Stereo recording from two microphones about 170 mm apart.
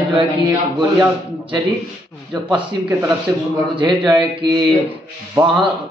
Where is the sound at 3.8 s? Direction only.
25° right (ahead or behind).